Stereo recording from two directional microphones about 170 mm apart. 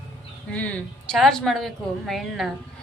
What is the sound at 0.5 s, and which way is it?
A woman's voice, 5° left (ahead or behind).